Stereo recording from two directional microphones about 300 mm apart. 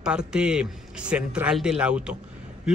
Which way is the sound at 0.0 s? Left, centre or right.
Centre.